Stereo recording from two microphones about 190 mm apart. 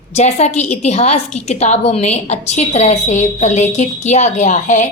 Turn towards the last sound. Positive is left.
turn(degrees=40)  # may be behind; listen again after turning